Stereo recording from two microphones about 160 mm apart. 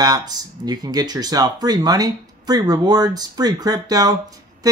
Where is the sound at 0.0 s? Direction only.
25° right (ahead or behind).